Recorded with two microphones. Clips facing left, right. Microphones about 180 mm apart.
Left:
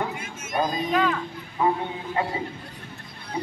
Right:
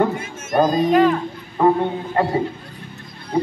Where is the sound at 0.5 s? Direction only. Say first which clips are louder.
Right 9 dB; 45° right (ahead or behind).